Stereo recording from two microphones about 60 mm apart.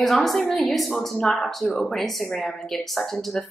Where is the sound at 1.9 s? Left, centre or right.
Centre.